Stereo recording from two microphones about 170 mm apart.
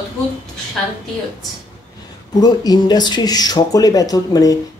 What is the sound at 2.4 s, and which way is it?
Speech, 25° left (ahead or behind).